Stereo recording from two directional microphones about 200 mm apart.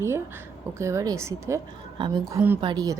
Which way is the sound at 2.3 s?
10° right (ahead or behind).